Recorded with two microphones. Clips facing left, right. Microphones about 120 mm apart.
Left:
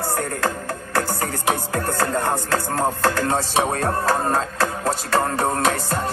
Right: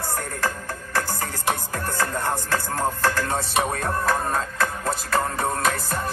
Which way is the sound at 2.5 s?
25° left (ahead or behind).